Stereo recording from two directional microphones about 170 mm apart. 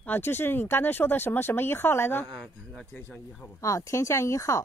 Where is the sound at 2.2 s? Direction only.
Centre (ahead or behind).